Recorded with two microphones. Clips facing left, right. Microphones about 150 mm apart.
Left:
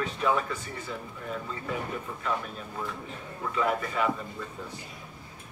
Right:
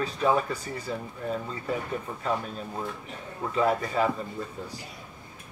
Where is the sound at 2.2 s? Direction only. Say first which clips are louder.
Right 3 dB; 35° right (ahead or behind).